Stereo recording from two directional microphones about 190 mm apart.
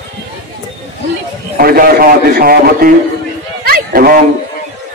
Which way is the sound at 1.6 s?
50° right (ahead or behind).